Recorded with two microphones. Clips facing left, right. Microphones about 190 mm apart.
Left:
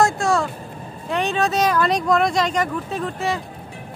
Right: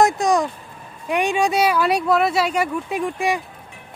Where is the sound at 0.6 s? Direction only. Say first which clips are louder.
Left 6 dB; 35° left (ahead or behind).